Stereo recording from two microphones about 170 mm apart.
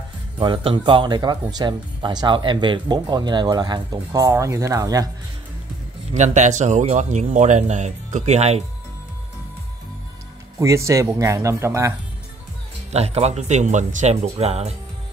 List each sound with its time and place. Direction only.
0.4 s speech: 30° right (ahead or behind)
6.1 s speech: 45° right (ahead or behind)
10.6 s speech: 15° right (ahead or behind)
12.9 s speech: 40° right (ahead or behind)